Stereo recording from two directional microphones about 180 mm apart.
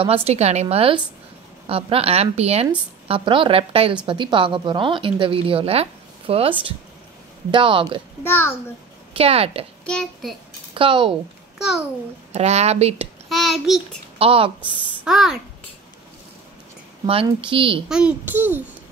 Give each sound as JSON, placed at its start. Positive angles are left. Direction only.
{"t": 0.0, "sound": "a woman's voice", "side_deg": -35}
{"t": 7.5, "sound": "a woman's voice", "side_deg": -30}
{"t": 8.2, "sound": "a child's voice", "side_deg": 10}
{"t": 9.1, "sound": "a woman's voice", "side_deg": -35}
{"t": 9.8, "sound": "a child's voice", "side_deg": 5}
{"t": 10.7, "sound": "a woman's voice", "side_deg": -30}
{"t": 11.5, "sound": "a child's voice", "side_deg": 0}
{"t": 12.3, "sound": "a woman's voice", "side_deg": -35}
{"t": 13.3, "sound": "a child's voice", "side_deg": 0}
{"t": 14.1, "sound": "a woman's voice", "side_deg": -30}
{"t": 15.0, "sound": "a child's voice", "side_deg": 0}
{"t": 17.0, "sound": "a woman's voice", "side_deg": -30}
{"t": 17.8, "sound": "a child's voice", "side_deg": -5}